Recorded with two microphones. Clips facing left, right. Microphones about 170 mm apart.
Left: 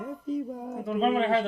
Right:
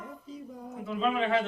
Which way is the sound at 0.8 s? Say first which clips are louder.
Left 4 dB; 40° left (ahead or behind).